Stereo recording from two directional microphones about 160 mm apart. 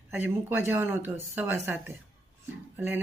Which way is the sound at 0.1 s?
15° right (ahead or behind).